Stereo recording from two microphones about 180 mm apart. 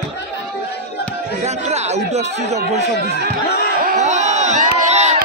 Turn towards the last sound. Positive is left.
turn(degrees=-40)  # may be behind; listen again after turning